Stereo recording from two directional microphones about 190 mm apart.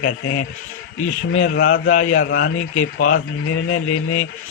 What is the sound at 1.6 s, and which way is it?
Speech, 45° left (ahead or behind).